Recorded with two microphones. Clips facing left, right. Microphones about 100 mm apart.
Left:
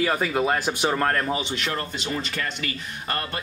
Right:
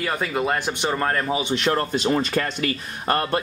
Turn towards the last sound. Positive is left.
turn(degrees=-40)  # may be behind; listen again after turning